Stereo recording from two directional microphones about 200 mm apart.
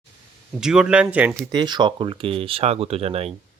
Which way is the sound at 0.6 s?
5° right (ahead or behind).